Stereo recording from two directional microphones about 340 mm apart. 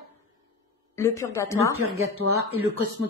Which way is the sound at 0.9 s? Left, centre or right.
Centre.